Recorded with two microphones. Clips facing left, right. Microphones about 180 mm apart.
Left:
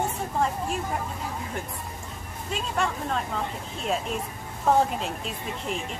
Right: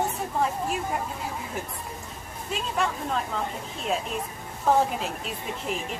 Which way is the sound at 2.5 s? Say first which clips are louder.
Even; centre (ahead or behind).